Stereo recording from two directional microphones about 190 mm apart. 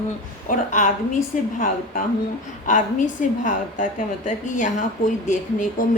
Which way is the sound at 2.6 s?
40° left (ahead or behind).